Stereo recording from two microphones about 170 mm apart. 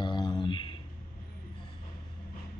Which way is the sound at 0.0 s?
25° left (ahead or behind).